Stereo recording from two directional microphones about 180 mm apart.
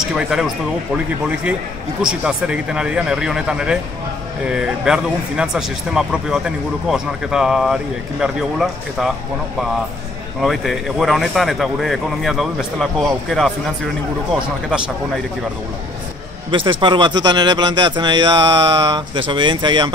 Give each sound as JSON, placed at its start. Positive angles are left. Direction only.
{"t": 0.0, "sound": "speech", "side_deg": -5}
{"t": 2.0, "sound": "speech", "side_deg": -5}
{"t": 10.4, "sound": "speech", "side_deg": 0}
{"t": 16.4, "sound": "a man's voice", "side_deg": -25}